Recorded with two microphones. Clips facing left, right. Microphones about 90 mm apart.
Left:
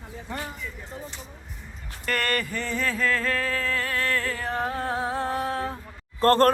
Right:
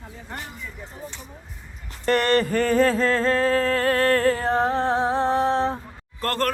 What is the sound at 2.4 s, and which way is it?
Music, 50° right (ahead or behind).